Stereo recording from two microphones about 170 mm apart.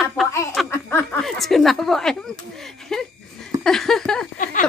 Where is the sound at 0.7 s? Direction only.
15° left (ahead or behind).